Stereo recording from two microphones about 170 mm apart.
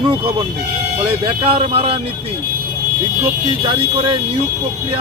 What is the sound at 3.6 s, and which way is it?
Speech, 30° right (ahead or behind).